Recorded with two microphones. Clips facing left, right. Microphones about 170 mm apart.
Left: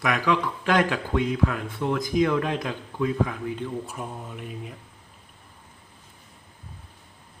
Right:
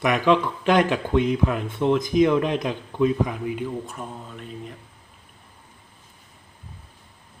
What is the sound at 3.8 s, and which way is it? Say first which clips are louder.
Speech: even; 10° left (ahead or behind).